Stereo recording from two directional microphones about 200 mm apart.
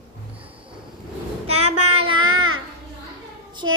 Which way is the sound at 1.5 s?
90° right.